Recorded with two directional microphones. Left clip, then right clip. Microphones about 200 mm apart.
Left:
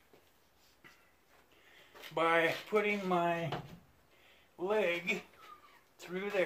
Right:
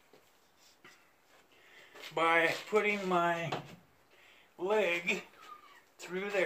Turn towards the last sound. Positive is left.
turn(degrees=15)  # may be behind; listen again after turning